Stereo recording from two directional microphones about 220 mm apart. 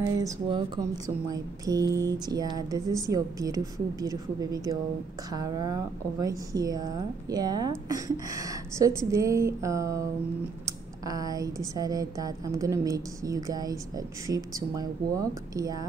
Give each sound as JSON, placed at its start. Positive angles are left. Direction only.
{"t": 0.2, "sound": "a woman's voice", "side_deg": -20}